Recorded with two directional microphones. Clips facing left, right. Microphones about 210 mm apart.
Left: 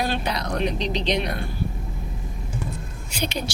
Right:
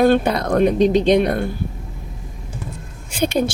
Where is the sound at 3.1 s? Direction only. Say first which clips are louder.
Right 10 dB; 50° right (ahead or behind).